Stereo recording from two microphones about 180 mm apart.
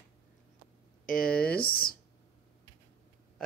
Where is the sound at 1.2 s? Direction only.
5° left (ahead or behind).